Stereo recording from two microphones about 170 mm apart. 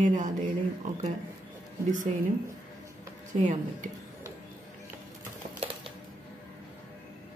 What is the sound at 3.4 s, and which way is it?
Speech, 40° right (ahead or behind).